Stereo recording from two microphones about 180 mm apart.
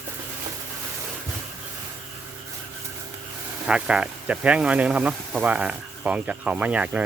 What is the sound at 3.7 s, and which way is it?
Speech, 5° right (ahead or behind).